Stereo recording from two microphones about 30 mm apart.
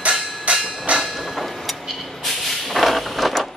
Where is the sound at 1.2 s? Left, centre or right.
Centre.